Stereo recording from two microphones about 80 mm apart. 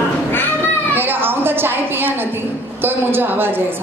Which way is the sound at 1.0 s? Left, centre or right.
Right.